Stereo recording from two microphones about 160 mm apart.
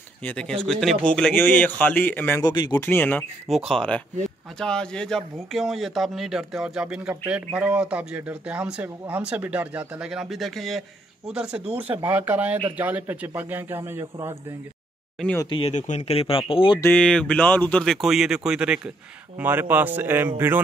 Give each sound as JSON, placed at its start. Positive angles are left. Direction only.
{"t": 0.2, "sound": "a man's voice", "side_deg": 5}
{"t": 2.4, "sound": "speech", "side_deg": 25}
{"t": 2.8, "sound": "a man's voice", "side_deg": 10}
{"t": 3.4, "sound": "a man's voice", "side_deg": 0}
{"t": 15.5, "sound": "speech", "side_deg": 40}
{"t": 16.8, "sound": "a man's voice", "side_deg": 5}